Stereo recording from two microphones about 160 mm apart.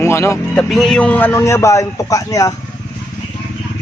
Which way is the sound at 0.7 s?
Centre (ahead or behind).